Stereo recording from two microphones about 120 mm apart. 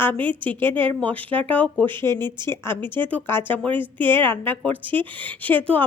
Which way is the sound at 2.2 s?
40° right (ahead or behind).